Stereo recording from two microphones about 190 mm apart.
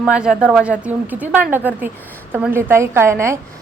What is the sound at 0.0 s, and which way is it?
A woman's voice, 5° right (ahead or behind).